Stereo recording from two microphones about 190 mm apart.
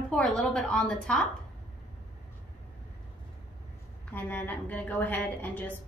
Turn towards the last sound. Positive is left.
turn(degrees=10)  # may be behind; listen again after turning